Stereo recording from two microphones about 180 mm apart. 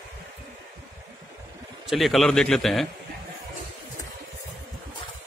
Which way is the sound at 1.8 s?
Centre (ahead or behind).